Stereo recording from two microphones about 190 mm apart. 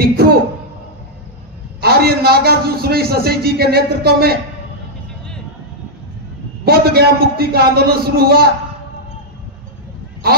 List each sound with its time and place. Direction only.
0.0 s a sound: 55° right (ahead or behind)
1.8 s a man's voice: 55° right (ahead or behind)
6.6 s a man's voice: 55° right (ahead or behind)